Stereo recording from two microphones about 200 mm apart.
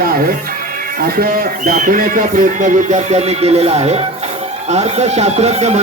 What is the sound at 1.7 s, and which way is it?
Speech, 45° right (ahead or behind).